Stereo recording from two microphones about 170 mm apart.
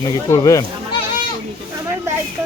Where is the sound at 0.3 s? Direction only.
20° left (ahead or behind).